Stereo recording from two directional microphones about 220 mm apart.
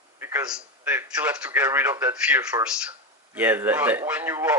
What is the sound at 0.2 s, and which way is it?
A man's voice, 10° right (ahead or behind).